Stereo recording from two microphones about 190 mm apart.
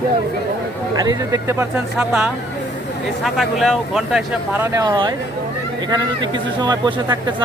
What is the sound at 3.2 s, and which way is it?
Speech, centre (ahead or behind).